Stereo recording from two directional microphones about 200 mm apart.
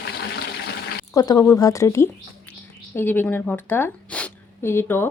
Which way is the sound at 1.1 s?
20° left (ahead or behind).